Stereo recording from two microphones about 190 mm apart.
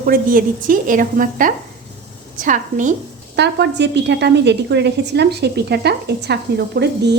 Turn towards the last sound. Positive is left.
turn(degrees=-60)  # may be behind; listen again after turning